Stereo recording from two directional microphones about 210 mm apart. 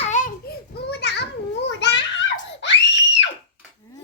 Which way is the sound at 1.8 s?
55° left (ahead or behind).